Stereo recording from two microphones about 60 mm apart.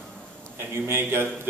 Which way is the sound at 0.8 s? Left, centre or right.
Right.